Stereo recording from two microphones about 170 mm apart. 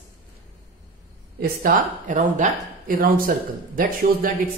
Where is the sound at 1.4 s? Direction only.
55° right (ahead or behind).